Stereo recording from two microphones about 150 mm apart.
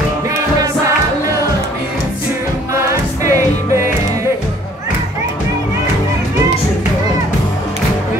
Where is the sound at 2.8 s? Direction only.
20° right (ahead or behind).